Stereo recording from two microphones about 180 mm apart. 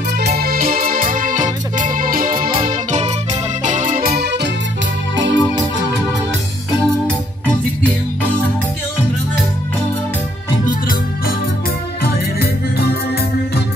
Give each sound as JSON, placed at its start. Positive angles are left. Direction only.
{"t": 0.2, "sound": "music", "side_deg": -60}
{"t": 5.1, "sound": "organ", "side_deg": -90}
{"t": 10.7, "sound": "music", "side_deg": 55}